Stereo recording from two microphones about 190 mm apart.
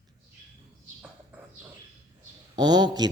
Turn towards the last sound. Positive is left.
turn(degrees=-20)  # may be behind; listen again after turning